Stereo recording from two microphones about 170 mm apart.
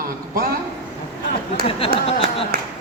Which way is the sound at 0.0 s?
60° right (ahead or behind).